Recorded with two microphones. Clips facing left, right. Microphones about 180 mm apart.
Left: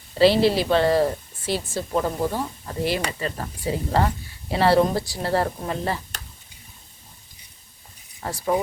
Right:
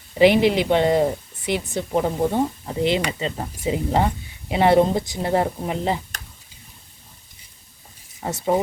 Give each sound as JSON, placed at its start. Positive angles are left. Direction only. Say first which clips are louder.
{"t": 0.1, "sound": "speech", "louder": "right 2 dB", "side_deg": -15}
{"t": 8.2, "sound": "speech", "louder": "right 2 dB", "side_deg": -20}